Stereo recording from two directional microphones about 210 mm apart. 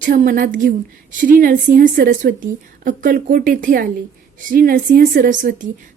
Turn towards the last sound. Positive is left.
turn(degrees=-40)  # may be behind; listen again after turning